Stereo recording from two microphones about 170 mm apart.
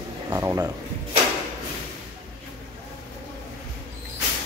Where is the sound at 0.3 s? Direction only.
15° right (ahead or behind).